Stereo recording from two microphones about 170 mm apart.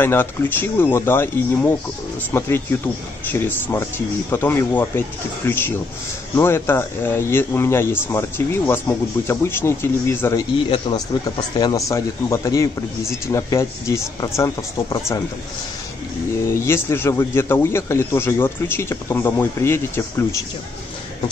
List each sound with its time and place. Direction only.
0.0 s speech: 10° left (ahead or behind)
11.5 s speech: 25° left (ahead or behind)
16.5 s speech: 15° left (ahead or behind)